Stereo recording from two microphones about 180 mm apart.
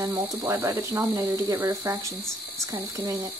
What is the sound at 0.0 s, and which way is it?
A woman's voice, 15° right (ahead or behind).